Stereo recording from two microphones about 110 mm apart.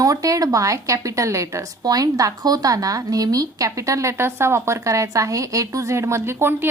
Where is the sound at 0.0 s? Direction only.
30° right (ahead or behind).